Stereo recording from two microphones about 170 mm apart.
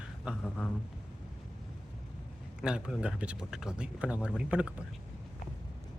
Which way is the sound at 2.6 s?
5° right (ahead or behind).